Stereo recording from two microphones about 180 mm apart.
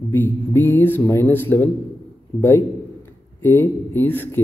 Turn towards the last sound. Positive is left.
turn(degrees=10)  # may be behind; listen again after turning